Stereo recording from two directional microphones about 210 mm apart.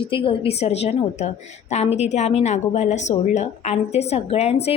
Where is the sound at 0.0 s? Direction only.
25° left (ahead or behind).